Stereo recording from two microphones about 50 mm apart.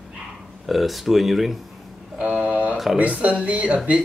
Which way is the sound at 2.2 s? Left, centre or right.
Right.